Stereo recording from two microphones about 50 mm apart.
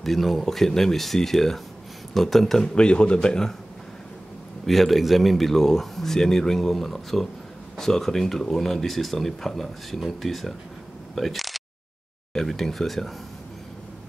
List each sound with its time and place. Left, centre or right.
0.0 s speech: centre
2.7 s speech: centre
4.6 s speech: centre
11.1 s a sound: centre
12.4 s speech: centre